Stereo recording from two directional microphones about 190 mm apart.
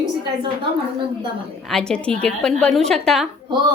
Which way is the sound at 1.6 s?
5° left (ahead or behind).